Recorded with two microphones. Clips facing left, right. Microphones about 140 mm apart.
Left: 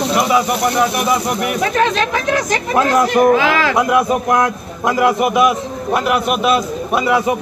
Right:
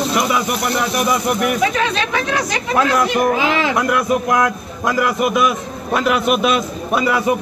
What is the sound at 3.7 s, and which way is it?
A man's voice, 25° left (ahead or behind).